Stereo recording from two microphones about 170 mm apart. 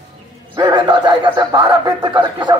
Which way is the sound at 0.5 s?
25° right (ahead or behind).